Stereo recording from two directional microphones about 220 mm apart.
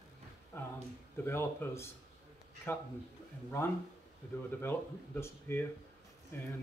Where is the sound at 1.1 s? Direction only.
10° left (ahead or behind).